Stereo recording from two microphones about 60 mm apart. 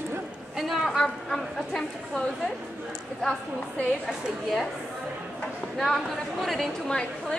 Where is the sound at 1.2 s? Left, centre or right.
Centre.